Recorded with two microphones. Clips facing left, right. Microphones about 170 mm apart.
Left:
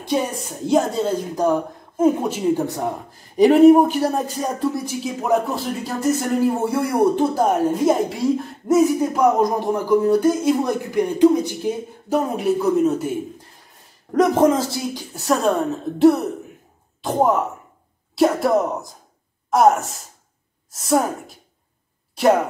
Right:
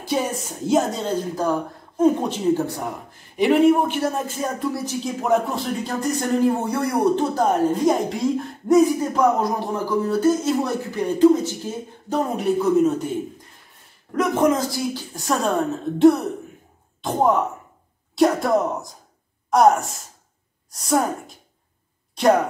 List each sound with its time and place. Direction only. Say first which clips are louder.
0.0 s a woman's voice: left 1 dB; centre (ahead or behind); by 1.6 s 20° left (ahead or behind)
2.0 s speech: left 1 dB; 10° left (ahead or behind)
2.6 s speech: left 3 dB; 20° left (ahead or behind)
3.1 s speech: left 4 dB; 40° left (ahead or behind)
5.0 s speech: left 1 dB; centre (ahead or behind)
12.2 s a woman's voice: even; centre (ahead or behind)
14.1 s speech: left 3 dB; 35° left (ahead or behind)
15.0 s a woman's voice: left 3 dB; 5° left (ahead or behind)
22.1 s a sound: left 1 dB; 5° left (ahead or behind)